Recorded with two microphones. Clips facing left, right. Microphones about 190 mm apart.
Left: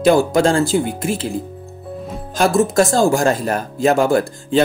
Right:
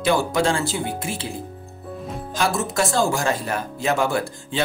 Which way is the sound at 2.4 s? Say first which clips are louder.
Left 8 dB; 45° left (ahead or behind).